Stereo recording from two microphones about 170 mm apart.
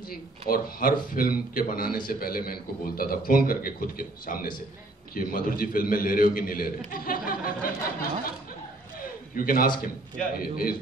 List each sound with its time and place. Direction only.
0.1 s a man's voice: 60° left (ahead or behind)
9.3 s a man's voice: 55° left (ahead or behind)